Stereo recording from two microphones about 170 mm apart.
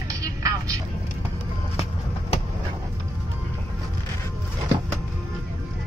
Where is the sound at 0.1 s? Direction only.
20° right (ahead or behind).